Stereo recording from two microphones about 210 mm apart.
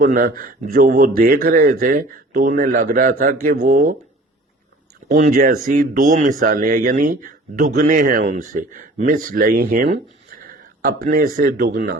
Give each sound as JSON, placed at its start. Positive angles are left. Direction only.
{"t": 0.0, "sound": "a man's voice", "side_deg": -40}
{"t": 5.0, "sound": "a man's voice", "side_deg": -35}
{"t": 10.4, "sound": "a sound", "side_deg": -40}
{"t": 11.4, "sound": "a man's voice", "side_deg": -40}